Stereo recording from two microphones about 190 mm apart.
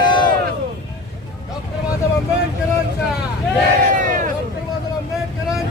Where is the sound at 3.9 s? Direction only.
45° right (ahead or behind).